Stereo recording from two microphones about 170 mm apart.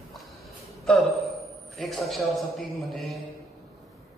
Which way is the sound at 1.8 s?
Centre (ahead or behind).